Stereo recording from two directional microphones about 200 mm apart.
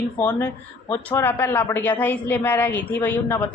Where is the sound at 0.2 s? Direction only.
10° left (ahead or behind).